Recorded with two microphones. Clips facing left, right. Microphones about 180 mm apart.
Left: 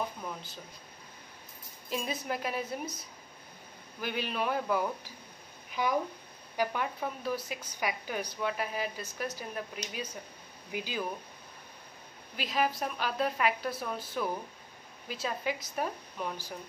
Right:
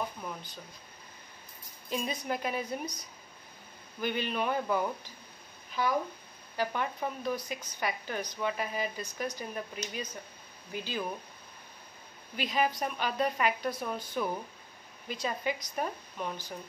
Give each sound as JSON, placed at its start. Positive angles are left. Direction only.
{"t": 0.2, "sound": "speech", "side_deg": 0}
{"t": 1.9, "sound": "a woman's voice", "side_deg": 0}
{"t": 5.7, "sound": "a woman's voice", "side_deg": 15}
{"t": 10.7, "sound": "speech", "side_deg": 10}
{"t": 12.4, "sound": "a woman's voice", "side_deg": 0}